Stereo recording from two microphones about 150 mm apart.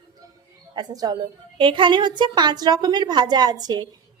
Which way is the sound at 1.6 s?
35° right (ahead or behind).